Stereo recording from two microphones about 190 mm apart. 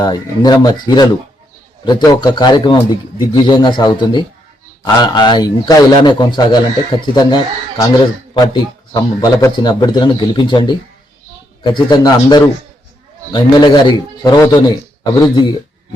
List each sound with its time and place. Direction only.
0.0 s a man's voice: 20° left (ahead or behind)